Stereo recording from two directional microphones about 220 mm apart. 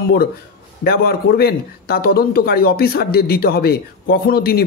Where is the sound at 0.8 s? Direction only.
45° left (ahead or behind).